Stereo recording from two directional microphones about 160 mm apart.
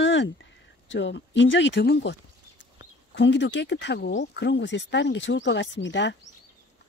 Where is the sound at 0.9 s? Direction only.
90° left.